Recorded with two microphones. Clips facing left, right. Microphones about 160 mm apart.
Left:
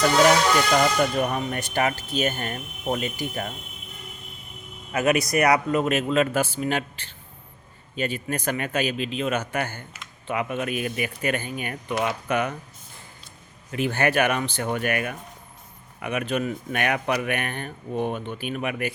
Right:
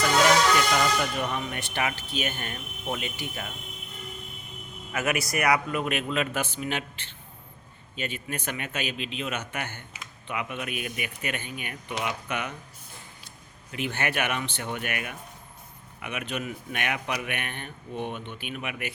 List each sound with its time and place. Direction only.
0.7 s speech: 45° left (ahead or behind)
4.9 s speech: 35° left (ahead or behind)
7.9 s speech: 40° left (ahead or behind)
13.7 s speech: 40° left (ahead or behind)